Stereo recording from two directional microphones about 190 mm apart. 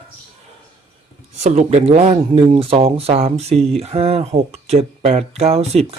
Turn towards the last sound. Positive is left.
turn(degrees=-35)  # may be behind; listen again after turning